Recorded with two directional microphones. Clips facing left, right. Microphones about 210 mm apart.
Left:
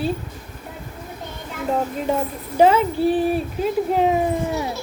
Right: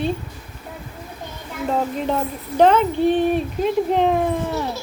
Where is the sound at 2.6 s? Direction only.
5° left (ahead or behind).